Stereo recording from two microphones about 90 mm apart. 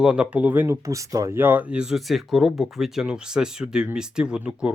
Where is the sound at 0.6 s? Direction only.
35° right (ahead or behind).